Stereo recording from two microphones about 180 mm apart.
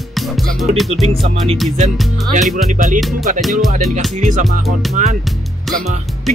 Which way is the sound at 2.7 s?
45° right (ahead or behind).